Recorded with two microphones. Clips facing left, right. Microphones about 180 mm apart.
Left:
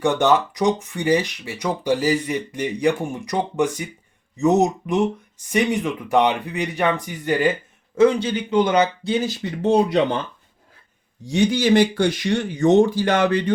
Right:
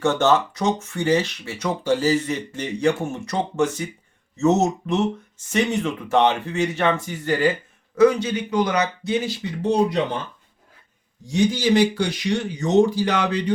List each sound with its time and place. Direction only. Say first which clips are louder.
0.0 s speech: left 1 dB; 15° left (ahead or behind)
7.9 s a man's voice: even; 30° left (ahead or behind)
9.2 s speech: left 2 dB; 55° left (ahead or behind)
11.3 s speech: left 2 dB; 65° left (ahead or behind)